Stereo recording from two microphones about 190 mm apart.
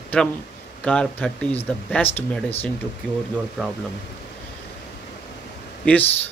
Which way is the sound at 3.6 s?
5° right (ahead or behind).